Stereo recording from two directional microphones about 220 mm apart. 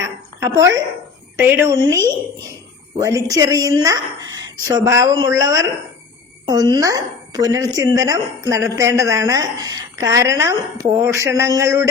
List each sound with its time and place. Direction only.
0.0 s a woman's voice: 15° right (ahead or behind)
3.0 s speech: 15° right (ahead or behind)